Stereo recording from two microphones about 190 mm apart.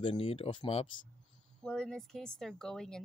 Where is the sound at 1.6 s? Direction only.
5° left (ahead or behind).